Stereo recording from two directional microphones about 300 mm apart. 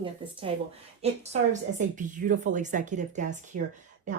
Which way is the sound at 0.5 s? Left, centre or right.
Centre.